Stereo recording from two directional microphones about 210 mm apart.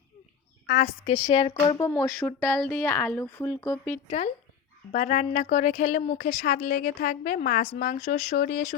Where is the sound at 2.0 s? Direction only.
5° left (ahead or behind).